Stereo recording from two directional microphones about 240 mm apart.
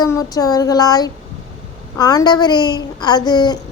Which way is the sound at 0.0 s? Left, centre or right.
Centre.